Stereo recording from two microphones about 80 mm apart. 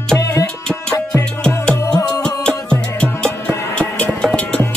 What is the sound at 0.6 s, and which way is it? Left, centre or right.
Music, centre.